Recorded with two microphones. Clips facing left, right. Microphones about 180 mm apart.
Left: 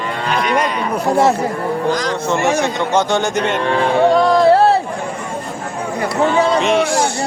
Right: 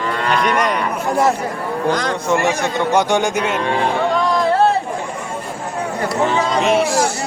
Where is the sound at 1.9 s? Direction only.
60° right (ahead or behind).